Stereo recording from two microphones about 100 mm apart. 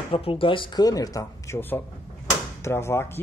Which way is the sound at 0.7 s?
40° left (ahead or behind).